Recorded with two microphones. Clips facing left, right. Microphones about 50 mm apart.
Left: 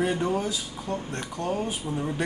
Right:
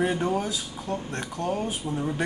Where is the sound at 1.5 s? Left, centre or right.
Centre.